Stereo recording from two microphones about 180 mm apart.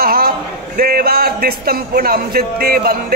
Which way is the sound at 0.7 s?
55° right (ahead or behind).